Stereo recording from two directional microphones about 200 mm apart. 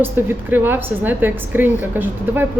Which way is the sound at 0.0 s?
10° right (ahead or behind).